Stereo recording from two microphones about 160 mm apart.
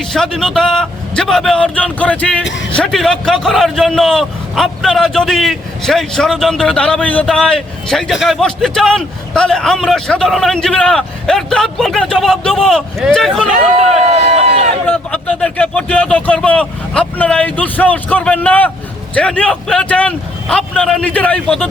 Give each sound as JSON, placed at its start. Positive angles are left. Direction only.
{"t": 0.0, "sound": "a man's voice", "side_deg": 5}
{"t": 14.1, "sound": "run", "side_deg": -40}
{"t": 14.8, "sound": "speech", "side_deg": 10}